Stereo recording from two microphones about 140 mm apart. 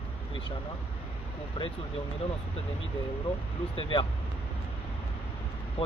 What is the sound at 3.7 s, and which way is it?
Speech, 35° left (ahead or behind).